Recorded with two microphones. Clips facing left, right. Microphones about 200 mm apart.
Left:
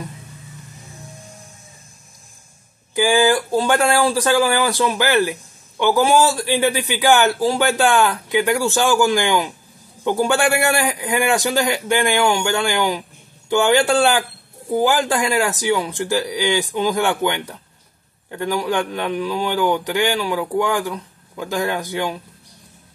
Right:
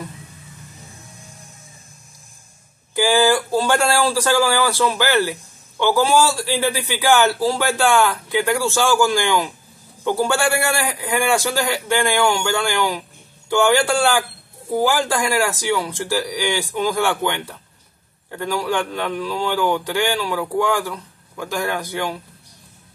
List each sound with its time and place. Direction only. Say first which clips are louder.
2.9 s speech: left 1 dB; 15° left (ahead or behind)